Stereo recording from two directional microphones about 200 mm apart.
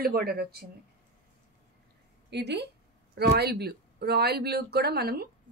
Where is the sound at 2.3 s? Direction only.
55° right (ahead or behind).